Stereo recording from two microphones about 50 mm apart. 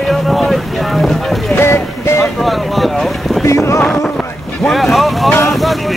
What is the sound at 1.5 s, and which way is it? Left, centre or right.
Boat, left.